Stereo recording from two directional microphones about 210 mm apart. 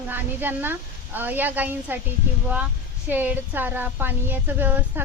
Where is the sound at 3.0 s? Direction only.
10° right (ahead or behind).